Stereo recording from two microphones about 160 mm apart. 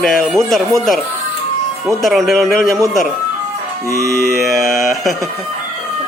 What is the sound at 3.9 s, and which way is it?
Music, 20° right (ahead or behind).